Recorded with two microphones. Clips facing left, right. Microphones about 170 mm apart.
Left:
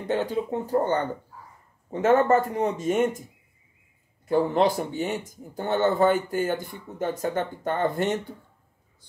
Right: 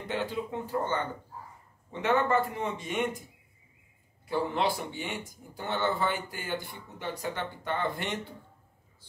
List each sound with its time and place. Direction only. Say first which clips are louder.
0.1 s speech: left 7 dB; 45° left (ahead or behind)
4.3 s speech: left 7 dB; 45° left (ahead or behind)